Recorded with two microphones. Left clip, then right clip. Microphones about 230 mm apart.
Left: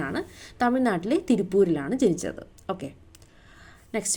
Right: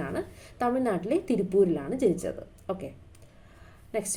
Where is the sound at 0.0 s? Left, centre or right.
Left.